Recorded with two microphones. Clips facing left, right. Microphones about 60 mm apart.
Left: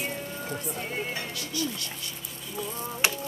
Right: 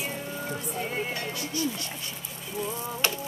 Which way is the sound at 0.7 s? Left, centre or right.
Centre.